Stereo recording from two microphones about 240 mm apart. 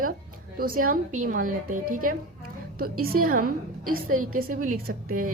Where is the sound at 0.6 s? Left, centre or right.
Right.